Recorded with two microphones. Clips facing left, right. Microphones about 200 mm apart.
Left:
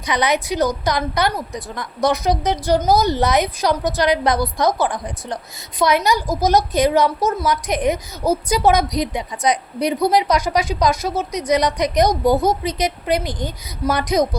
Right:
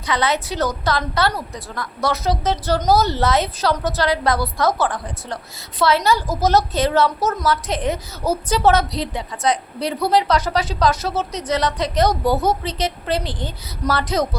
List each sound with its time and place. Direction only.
0.0 s a woman's voice: 15° left (ahead or behind)